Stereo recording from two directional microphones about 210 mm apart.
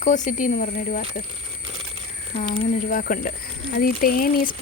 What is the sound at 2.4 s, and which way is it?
Speech, 35° left (ahead or behind).